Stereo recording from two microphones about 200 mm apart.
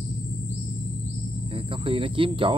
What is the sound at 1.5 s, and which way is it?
Speech, 25° right (ahead or behind).